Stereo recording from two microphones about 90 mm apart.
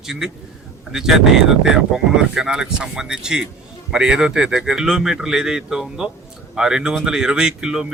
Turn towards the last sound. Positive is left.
turn(degrees=-10)  # may be behind; listen again after turning